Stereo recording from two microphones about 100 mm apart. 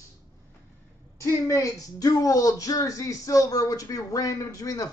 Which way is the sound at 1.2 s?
30° left (ahead or behind).